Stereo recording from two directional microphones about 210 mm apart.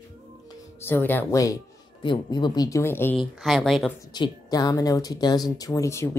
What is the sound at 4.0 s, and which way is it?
Speech, 20° left (ahead or behind).